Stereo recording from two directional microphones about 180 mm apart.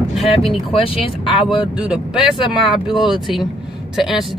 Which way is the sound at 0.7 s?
30° left (ahead or behind).